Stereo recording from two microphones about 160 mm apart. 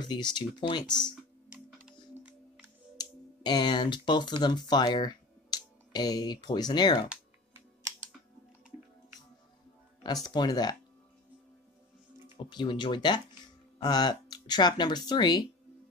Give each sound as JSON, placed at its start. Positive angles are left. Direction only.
{"t": 0.0, "sound": "speech", "side_deg": 25}
{"t": 1.5, "sound": "music", "side_deg": -10}
{"t": 3.0, "sound": "speech", "side_deg": 25}
{"t": 10.2, "sound": "speech", "side_deg": 25}
{"t": 12.4, "sound": "speech", "side_deg": 30}